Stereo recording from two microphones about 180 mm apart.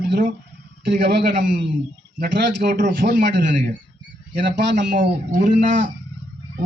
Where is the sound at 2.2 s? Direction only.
65° right (ahead or behind).